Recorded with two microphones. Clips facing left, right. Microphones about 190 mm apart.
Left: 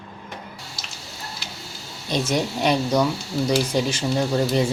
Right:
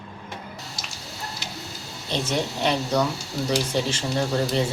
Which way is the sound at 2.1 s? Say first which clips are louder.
Left 3 dB; 10° left (ahead or behind).